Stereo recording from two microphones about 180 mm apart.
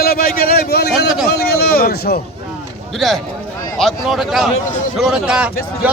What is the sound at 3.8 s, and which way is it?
A man's voice, centre (ahead or behind).